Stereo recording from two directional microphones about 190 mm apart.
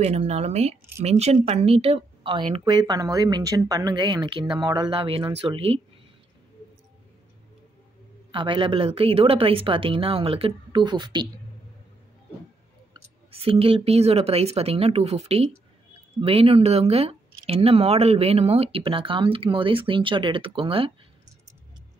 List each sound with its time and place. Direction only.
0.0 s speech: 35° right (ahead or behind)
8.3 s speech: 25° right (ahead or behind)
13.3 s speech: 30° right (ahead or behind)